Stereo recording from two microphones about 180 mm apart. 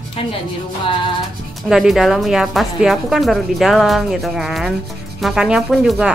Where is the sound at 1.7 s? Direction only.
Centre (ahead or behind).